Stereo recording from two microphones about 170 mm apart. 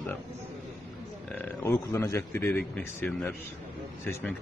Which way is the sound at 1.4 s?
15° left (ahead or behind).